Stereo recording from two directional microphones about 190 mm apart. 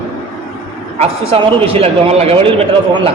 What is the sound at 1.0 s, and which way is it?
A man's voice, 30° right (ahead or behind).